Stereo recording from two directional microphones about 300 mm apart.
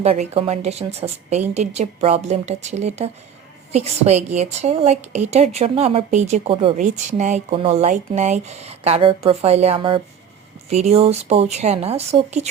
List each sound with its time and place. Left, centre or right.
0.0 s speech: right